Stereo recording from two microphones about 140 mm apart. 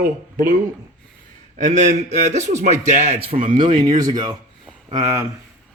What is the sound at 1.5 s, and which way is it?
A man's voice, 60° right (ahead or behind).